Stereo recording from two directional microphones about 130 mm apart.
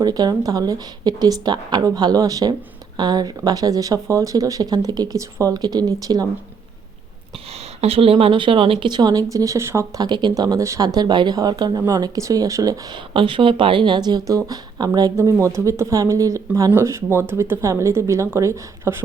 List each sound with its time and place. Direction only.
0.0 s a woman's voice: 30° right (ahead or behind)
7.8 s a woman's voice: 50° right (ahead or behind); by 9.8 s 20° right (ahead or behind)
10.0 s a woman's voice: 35° right (ahead or behind)
13.1 s a woman's voice: 40° right (ahead or behind); by 19.0 s 20° right (ahead or behind)